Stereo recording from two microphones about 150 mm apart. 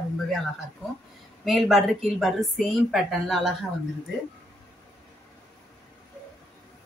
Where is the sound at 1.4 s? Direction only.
Centre (ahead or behind).